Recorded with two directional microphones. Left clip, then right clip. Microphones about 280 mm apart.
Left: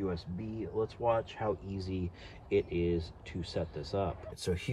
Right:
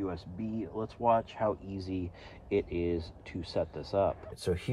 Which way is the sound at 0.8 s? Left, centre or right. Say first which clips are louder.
Right 3 dB; centre.